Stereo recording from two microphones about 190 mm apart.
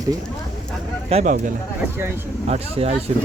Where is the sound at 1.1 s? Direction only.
35° right (ahead or behind).